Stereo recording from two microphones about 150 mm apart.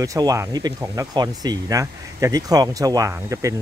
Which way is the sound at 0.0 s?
25° right (ahead or behind).